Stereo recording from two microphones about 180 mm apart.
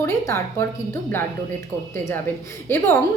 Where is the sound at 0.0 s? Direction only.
15° left (ahead or behind).